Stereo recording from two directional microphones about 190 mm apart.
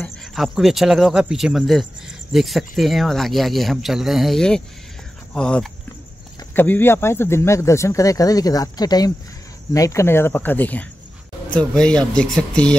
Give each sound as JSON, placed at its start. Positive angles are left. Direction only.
{"t": 0.0, "sound": "speech", "side_deg": 0}